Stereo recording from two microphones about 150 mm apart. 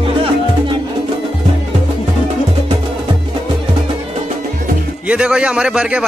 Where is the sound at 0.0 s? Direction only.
40° right (ahead or behind).